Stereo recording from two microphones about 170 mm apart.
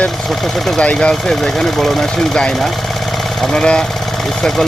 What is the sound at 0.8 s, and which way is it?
Speech, 5° left (ahead or behind).